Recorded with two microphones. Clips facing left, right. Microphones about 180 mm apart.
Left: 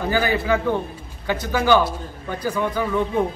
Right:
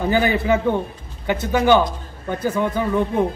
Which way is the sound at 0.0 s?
20° right (ahead or behind).